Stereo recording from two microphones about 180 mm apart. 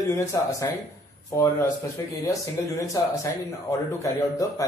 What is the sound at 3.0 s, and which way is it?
A man's voice, 20° left (ahead or behind).